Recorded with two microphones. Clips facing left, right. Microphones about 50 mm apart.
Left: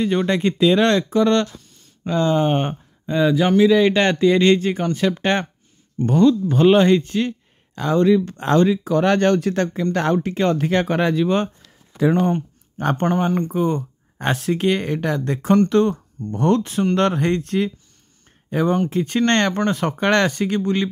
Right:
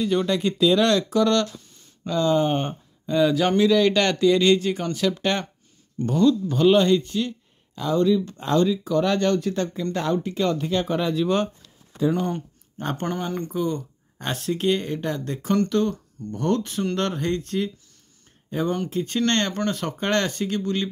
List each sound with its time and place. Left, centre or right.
0.0 s speech: left
1.6 s a sound: centre
2.0 s speech: left
3.1 s speech: left
3.3 s speech: centre
3.7 s speech: left
13.1 s speech: left